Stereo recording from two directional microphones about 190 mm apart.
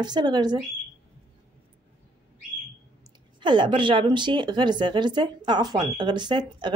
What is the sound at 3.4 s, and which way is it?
A woman's voice, 25° right (ahead or behind).